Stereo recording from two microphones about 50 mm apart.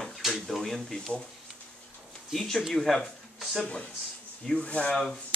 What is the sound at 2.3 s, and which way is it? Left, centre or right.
Speech, centre.